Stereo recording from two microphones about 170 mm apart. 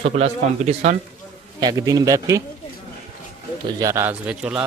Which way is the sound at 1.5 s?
25° right (ahead or behind).